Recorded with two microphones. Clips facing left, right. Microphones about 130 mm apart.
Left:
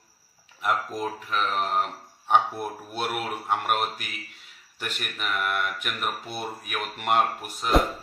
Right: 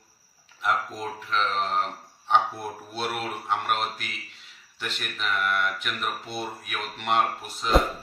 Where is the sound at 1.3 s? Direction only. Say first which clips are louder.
Right 1 dB; 10° left (ahead or behind).